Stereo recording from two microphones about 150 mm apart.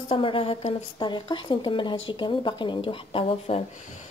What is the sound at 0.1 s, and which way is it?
Speech, 35° left (ahead or behind).